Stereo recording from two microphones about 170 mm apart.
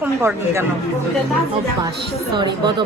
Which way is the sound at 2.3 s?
25° right (ahead or behind).